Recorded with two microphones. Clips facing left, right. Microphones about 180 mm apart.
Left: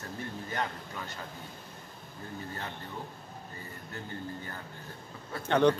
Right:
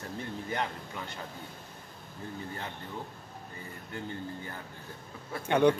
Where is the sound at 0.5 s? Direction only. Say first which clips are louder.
Right 1 dB; 15° right (ahead or behind).